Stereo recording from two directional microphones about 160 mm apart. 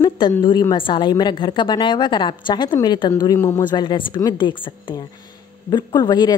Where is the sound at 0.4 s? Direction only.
25° left (ahead or behind).